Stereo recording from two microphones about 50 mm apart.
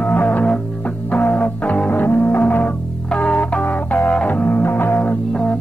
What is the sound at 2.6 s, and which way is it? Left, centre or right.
Music, centre.